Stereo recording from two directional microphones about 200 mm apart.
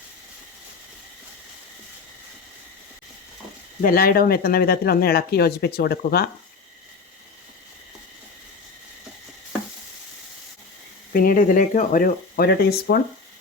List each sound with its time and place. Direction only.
3.8 s speech: 50° left (ahead or behind)
11.1 s speech: 45° left (ahead or behind)